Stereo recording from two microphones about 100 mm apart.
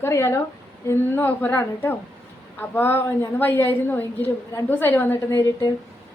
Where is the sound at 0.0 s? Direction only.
30° left (ahead or behind).